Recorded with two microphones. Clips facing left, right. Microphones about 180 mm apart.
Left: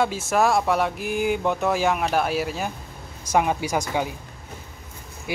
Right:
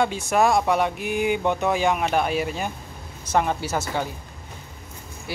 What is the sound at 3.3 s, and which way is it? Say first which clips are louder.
Mantra: left 1 dB; 10° left (ahead or behind).